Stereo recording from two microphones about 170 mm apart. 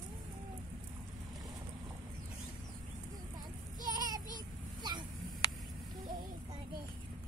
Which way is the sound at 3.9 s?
20° right (ahead or behind).